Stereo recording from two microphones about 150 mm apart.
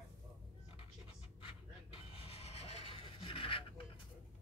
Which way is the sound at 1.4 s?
35° left (ahead or behind).